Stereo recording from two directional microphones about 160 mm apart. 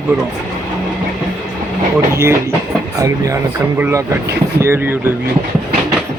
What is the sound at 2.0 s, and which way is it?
Speech, 15° right (ahead or behind).